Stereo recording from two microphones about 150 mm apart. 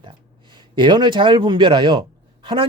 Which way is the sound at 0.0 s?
30° right (ahead or behind).